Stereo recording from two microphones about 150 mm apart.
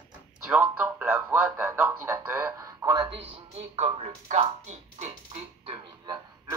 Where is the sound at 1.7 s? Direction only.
20° right (ahead or behind).